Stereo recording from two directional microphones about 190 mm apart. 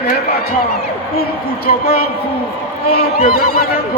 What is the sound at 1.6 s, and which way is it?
Speech, 55° left (ahead or behind).